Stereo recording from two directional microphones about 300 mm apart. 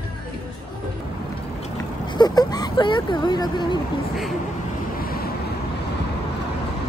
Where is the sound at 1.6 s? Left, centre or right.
Centre.